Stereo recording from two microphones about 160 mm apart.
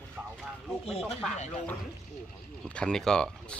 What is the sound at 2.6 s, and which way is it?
Speech, 5° left (ahead or behind).